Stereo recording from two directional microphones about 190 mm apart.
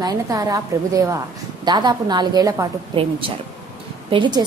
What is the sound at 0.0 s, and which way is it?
A woman's voice, 20° right (ahead or behind).